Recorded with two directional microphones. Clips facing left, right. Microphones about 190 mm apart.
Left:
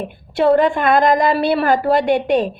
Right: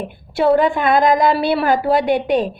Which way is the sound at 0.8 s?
50° left (ahead or behind).